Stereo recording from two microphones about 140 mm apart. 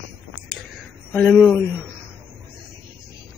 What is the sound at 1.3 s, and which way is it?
Speech, centre (ahead or behind).